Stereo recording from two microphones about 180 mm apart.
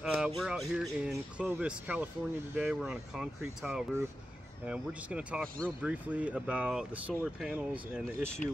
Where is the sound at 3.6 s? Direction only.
15° right (ahead or behind).